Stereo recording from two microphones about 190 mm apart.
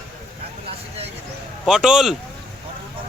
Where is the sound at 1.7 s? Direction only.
5° right (ahead or behind).